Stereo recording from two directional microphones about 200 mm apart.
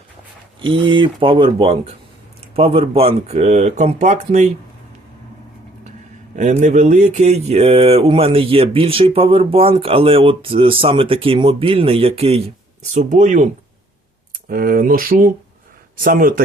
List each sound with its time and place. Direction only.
0.9 s speech: 25° right (ahead or behind)
6.3 s speech: 40° right (ahead or behind)
14.5 s speech: 45° right (ahead or behind)